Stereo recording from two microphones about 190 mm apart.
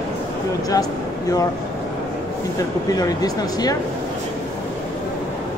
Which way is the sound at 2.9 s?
20° left (ahead or behind).